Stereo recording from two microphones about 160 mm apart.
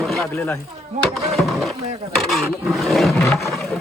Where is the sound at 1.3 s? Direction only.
Centre (ahead or behind).